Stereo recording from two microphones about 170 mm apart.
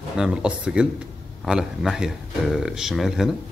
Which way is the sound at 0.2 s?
5° right (ahead or behind).